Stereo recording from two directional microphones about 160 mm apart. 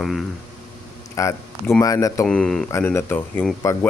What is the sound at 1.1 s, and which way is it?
Speech, 20° left (ahead or behind).